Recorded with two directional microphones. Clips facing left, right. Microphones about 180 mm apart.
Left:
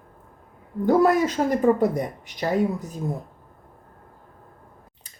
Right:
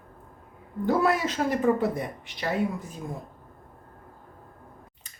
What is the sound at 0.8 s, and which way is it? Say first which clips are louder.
Speech: left 6 dB; 40° left (ahead or behind).